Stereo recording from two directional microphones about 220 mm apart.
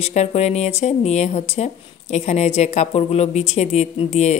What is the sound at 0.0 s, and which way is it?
Speech, 30° left (ahead or behind).